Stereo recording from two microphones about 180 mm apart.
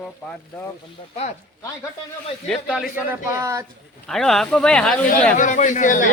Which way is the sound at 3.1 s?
15° right (ahead or behind).